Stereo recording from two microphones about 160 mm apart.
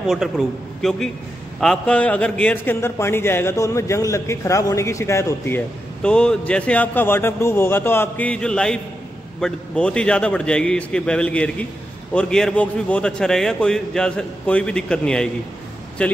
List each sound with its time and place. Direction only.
0.0 s a man's voice: centre (ahead or behind); by 5.6 s 15° left (ahead or behind)
6.0 s a man's voice: 5° left (ahead or behind)